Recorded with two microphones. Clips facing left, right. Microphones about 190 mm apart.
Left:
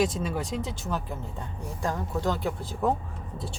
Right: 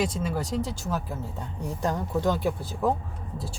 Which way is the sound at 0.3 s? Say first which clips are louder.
Right 2 dB; centre (ahead or behind).